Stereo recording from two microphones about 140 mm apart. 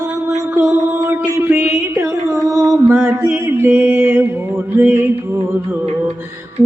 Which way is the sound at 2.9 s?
15° right (ahead or behind).